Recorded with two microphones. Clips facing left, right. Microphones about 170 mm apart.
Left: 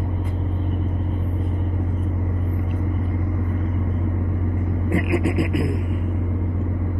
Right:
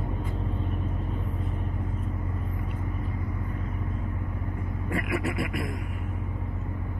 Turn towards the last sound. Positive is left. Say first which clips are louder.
# left 8 dB
turn(degrees=20)  # may be behind; listen again after turning